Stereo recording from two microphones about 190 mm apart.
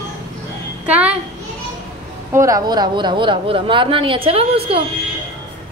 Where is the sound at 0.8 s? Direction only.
10° right (ahead or behind).